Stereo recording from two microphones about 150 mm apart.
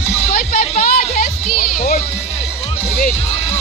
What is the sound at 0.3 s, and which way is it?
Music, 65° left (ahead or behind).